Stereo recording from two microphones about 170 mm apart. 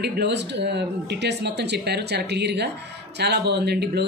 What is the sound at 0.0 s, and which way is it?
Speech, 75° right (ahead or behind).